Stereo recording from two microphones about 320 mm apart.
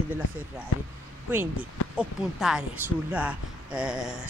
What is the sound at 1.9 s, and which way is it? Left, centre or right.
Speech, centre.